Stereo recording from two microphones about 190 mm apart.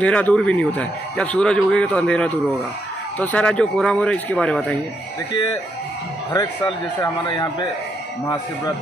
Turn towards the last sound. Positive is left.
turn(degrees=25)  # may be behind; listen again after turning